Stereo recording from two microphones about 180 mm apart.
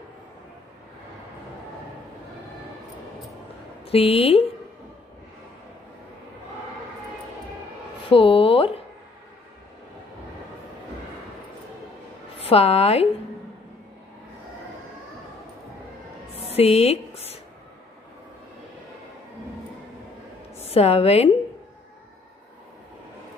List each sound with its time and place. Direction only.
3.8 s speech: 30° left (ahead or behind)
8.1 s a sound: 30° left (ahead or behind)
12.4 s speech: 35° left (ahead or behind)
16.5 s speech: 35° left (ahead or behind)
20.5 s a woman's voice: 35° left (ahead or behind)